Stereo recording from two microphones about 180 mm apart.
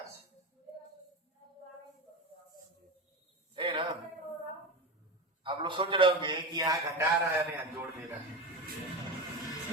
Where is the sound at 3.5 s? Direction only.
30° right (ahead or behind).